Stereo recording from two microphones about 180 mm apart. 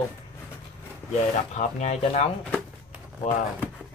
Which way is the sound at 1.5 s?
40° left (ahead or behind).